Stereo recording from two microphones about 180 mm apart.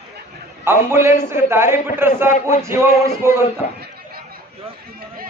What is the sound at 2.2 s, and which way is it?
Speech, 45° left (ahead or behind).